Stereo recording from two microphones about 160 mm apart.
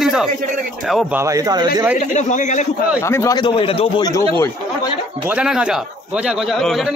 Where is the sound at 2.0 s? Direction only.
50° left (ahead or behind).